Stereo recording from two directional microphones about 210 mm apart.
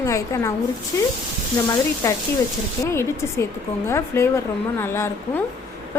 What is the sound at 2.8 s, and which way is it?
A woman's voice, 15° left (ahead or behind).